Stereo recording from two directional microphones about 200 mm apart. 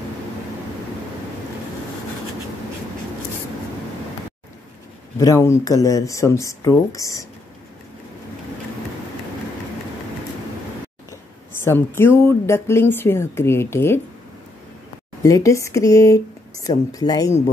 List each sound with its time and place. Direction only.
5.2 s speech: 15° left (ahead or behind)
11.6 s speech: 10° left (ahead or behind)
15.2 s speech: 15° left (ahead or behind)